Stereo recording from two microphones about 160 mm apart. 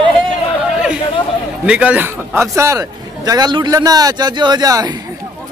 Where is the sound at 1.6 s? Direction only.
5° right (ahead or behind); by 4.9 s 25° right (ahead or behind).